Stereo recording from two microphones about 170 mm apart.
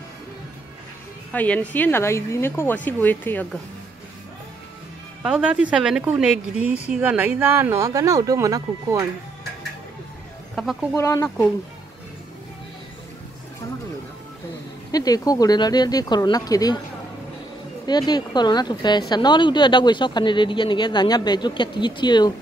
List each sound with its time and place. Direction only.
1.3 s speech: 10° left (ahead or behind)
5.2 s speech: 5° right (ahead or behind)
10.5 s a sound: centre (ahead or behind)
11.0 s speech: 15° left (ahead or behind)
14.9 s a woman's voice: 20° left (ahead or behind)
17.8 s a woman's voice: 25° left (ahead or behind)